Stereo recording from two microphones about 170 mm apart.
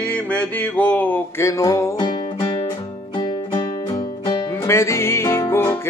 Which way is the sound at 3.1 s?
30° left (ahead or behind).